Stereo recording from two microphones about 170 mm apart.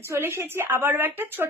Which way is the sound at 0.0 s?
15° right (ahead or behind).